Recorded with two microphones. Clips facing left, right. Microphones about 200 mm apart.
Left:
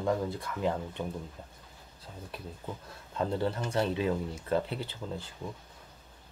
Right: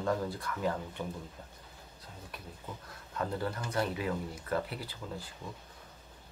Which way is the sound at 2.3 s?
30° left (ahead or behind).